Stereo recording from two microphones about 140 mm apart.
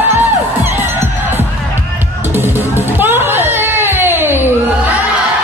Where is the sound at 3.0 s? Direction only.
15° right (ahead or behind).